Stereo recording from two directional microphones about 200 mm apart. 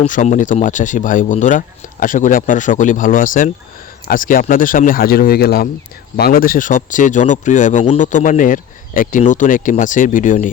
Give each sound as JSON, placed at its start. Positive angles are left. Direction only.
{"t": 0.0, "sound": "speech", "side_deg": 35}